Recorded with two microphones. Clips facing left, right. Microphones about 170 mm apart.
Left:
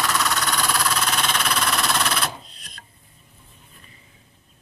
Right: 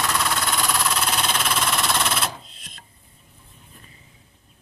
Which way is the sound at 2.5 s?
25° right (ahead or behind).